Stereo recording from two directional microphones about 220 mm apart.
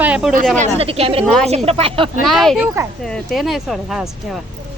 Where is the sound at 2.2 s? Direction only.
Centre (ahead or behind).